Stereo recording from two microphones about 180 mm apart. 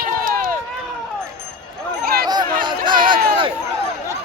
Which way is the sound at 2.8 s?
50° right (ahead or behind).